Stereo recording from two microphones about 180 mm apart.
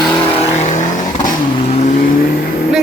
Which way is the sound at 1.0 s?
20° left (ahead or behind).